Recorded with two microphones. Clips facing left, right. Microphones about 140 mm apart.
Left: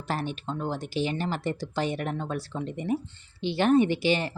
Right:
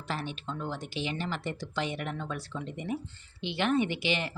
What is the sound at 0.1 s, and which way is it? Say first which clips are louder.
A woman's voice: left 5 dB; 45° left (ahead or behind).